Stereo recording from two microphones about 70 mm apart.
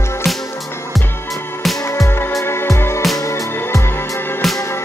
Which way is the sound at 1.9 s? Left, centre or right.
Left.